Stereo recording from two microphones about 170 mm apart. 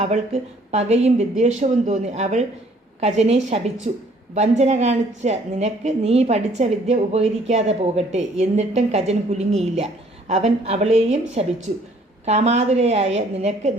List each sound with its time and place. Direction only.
0.7 s a woman's voice: 40° right (ahead or behind)